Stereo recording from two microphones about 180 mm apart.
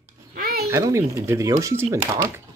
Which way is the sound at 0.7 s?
15° right (ahead or behind).